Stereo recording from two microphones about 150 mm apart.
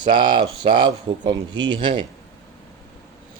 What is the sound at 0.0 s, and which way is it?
Speech, 30° right (ahead or behind).